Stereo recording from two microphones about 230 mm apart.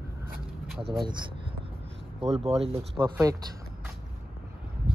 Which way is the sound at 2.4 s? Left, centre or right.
Right.